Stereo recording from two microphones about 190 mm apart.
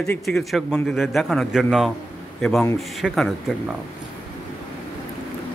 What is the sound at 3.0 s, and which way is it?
Speech, centre (ahead or behind).